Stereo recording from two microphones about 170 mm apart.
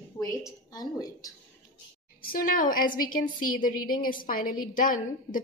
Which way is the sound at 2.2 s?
55° left (ahead or behind).